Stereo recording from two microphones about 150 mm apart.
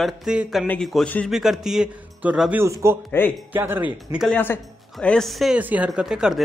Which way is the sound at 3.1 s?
10° left (ahead or behind).